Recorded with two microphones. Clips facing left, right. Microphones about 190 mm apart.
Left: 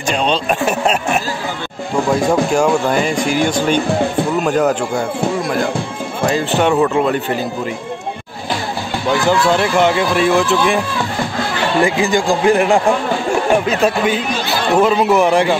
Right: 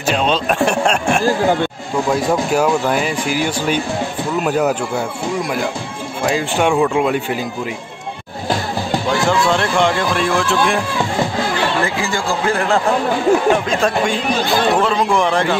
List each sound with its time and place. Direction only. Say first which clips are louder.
0.1 s speech: even; centre (ahead or behind)
1.2 s speech: right 9 dB; 50° right (ahead or behind)
2.9 s speech: left 2 dB; 5° right (ahead or behind)
6.2 s speech: left 2 dB; 10° right (ahead or behind)
9.5 s speech: left 2 dB; 5° left (ahead or behind)
11.8 s speech: left 5 dB; 15° left (ahead or behind)